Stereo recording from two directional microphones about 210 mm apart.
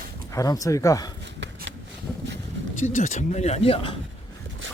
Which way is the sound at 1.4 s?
55° right (ahead or behind).